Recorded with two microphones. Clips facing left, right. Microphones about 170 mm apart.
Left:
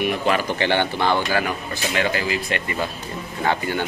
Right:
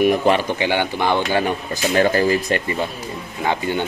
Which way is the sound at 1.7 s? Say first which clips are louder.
Right 6 dB; 40° right (ahead or behind).